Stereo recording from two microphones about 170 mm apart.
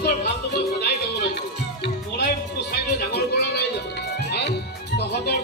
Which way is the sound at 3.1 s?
75° left (ahead or behind).